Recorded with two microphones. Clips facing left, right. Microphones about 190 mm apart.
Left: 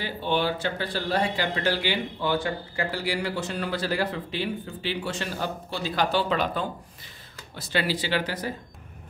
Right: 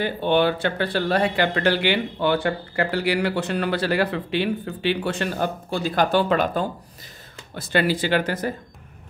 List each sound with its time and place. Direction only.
0.0 s speech: 60° right (ahead or behind)